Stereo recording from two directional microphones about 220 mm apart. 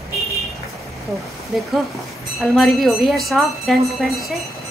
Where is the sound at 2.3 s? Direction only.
Centre (ahead or behind).